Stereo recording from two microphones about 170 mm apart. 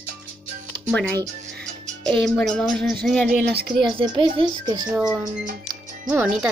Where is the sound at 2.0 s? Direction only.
5° left (ahead or behind).